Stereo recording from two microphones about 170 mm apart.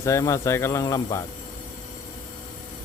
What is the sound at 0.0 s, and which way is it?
Speech, 15° left (ahead or behind).